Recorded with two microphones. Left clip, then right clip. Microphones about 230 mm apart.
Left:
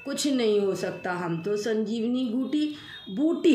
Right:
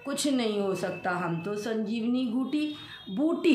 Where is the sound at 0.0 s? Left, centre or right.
Centre.